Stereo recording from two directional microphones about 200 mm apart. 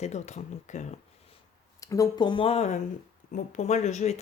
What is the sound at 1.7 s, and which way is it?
Speech, 15° left (ahead or behind).